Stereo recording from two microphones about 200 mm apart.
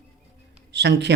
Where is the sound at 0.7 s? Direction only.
60° right (ahead or behind).